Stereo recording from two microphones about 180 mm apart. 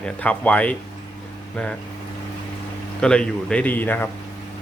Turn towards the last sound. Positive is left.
turn(degrees=10)  # may be behind; listen again after turning